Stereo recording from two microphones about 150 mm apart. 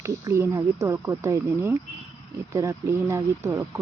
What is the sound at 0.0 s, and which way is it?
Speech, 20° right (ahead or behind).